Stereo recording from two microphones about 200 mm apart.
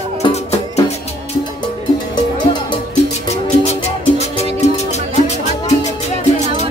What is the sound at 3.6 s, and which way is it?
Music, 35° left (ahead or behind).